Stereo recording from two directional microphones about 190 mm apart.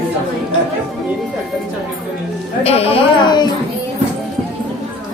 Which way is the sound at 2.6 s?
30° left (ahead or behind).